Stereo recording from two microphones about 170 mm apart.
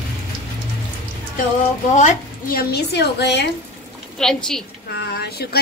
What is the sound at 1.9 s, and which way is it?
A woman's voice, 50° left (ahead or behind).